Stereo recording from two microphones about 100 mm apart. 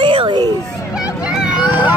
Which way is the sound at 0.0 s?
55° right (ahead or behind).